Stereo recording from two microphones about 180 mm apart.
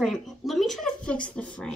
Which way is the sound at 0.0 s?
Centre (ahead or behind).